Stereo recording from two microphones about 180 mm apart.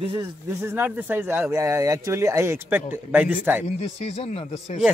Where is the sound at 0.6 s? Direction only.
10° right (ahead or behind).